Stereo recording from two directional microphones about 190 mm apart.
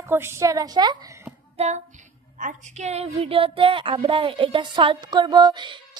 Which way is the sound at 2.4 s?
40° right (ahead or behind).